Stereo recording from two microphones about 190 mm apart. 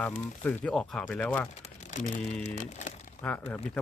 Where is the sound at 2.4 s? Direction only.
40° left (ahead or behind).